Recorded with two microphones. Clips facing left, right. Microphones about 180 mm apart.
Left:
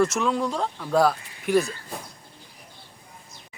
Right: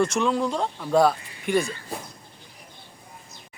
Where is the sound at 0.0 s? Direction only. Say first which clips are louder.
Even; centre (ahead or behind).